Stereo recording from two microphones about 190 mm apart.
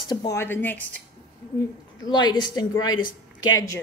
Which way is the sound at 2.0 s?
20° left (ahead or behind).